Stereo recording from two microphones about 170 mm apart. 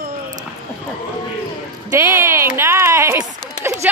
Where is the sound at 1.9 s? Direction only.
15° right (ahead or behind).